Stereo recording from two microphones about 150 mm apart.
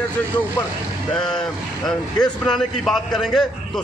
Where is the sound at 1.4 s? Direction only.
5° left (ahead or behind).